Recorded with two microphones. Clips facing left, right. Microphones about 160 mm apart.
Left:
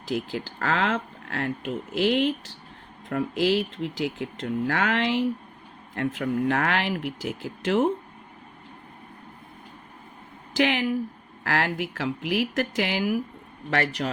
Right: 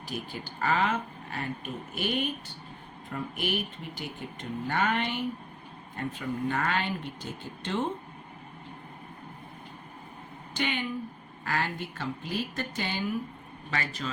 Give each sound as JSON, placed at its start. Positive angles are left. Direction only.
{"t": 0.0, "sound": "speech", "side_deg": 90}
{"t": 10.5, "sound": "a man's voice", "side_deg": 90}